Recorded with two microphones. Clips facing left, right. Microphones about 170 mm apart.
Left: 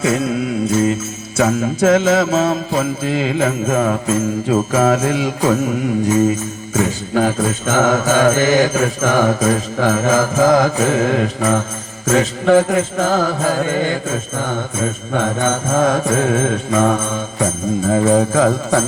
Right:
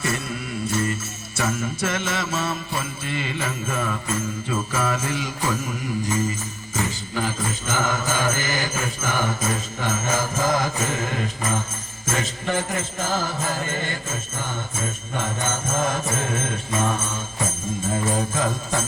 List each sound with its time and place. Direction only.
0.0 s music: 90° left
1.4 s jingle bell: 90° left
4.9 s mantra: 85° left
12.6 s mantra: 60° left (ahead or behind)